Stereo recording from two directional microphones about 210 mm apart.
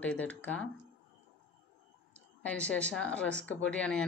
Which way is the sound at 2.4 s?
5° left (ahead or behind).